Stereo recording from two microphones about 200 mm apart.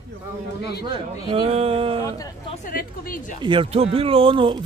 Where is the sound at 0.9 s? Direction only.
25° right (ahead or behind).